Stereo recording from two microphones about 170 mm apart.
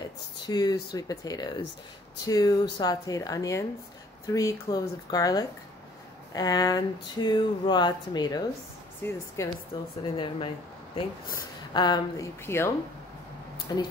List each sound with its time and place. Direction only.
0.5 s speech: 25° left (ahead or behind)
9.0 s speech: 15° left (ahead or behind)
10.1 s speech: 30° left (ahead or behind)